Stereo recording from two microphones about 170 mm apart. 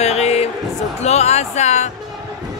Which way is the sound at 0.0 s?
40° left (ahead or behind).